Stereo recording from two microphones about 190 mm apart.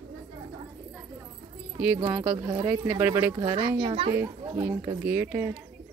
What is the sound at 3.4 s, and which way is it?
Speech, 25° right (ahead or behind).